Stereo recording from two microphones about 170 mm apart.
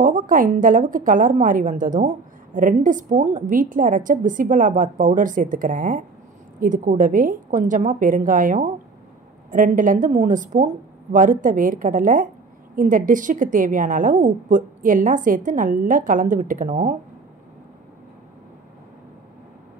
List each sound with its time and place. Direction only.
0.0 s a woman's voice: 50° right (ahead or behind)